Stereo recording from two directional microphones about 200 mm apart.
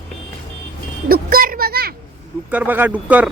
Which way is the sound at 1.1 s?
45° right (ahead or behind).